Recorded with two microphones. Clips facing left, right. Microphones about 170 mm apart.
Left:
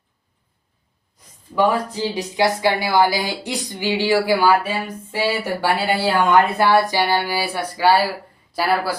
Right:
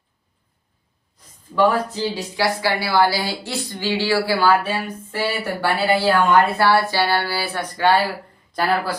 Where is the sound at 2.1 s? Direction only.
20° left (ahead or behind).